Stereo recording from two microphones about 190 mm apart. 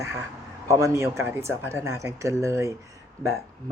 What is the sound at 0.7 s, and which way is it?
Speech, 15° right (ahead or behind).